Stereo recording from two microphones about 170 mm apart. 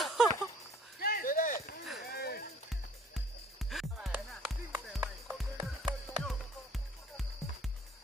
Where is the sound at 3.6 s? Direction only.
Centre (ahead or behind).